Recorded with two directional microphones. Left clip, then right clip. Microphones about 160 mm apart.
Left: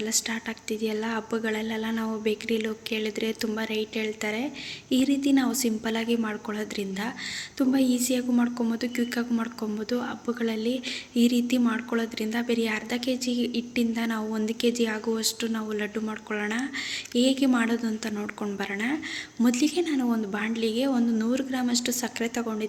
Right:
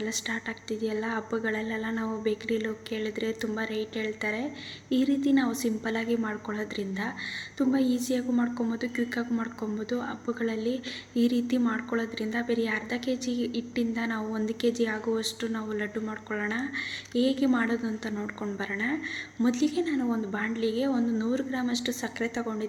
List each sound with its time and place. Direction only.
0.0 s a woman's voice: centre (ahead or behind)